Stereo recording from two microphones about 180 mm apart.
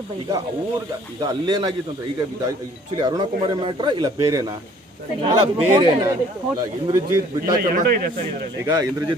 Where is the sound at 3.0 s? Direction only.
25° right (ahead or behind).